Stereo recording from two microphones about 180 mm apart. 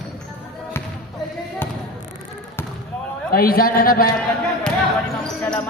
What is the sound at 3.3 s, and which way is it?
Speech, 55° left (ahead or behind).